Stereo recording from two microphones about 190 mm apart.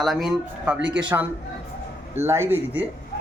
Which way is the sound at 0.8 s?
70° right (ahead or behind).